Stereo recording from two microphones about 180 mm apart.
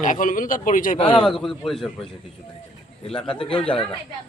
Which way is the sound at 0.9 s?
30° left (ahead or behind).